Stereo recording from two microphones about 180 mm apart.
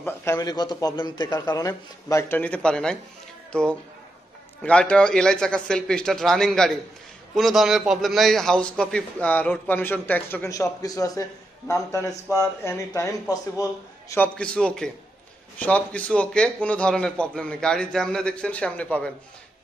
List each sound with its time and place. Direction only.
0.0 s a man's voice: 15° left (ahead or behind)
4.6 s a man's voice: 5° left (ahead or behind)